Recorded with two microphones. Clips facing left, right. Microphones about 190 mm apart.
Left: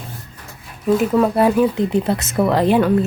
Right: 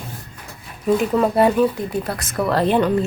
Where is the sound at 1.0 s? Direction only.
Centre (ahead or behind).